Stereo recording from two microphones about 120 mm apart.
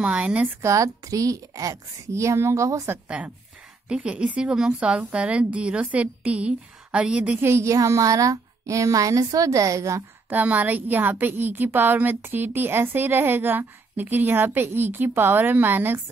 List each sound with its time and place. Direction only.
0.0 s a woman's voice: 10° right (ahead or behind)
0.6 s a woman's voice: 25° right (ahead or behind)
3.9 s a woman's voice: 10° right (ahead or behind); by 10.0 s 25° right (ahead or behind)
10.3 s a woman's voice: 15° right (ahead or behind)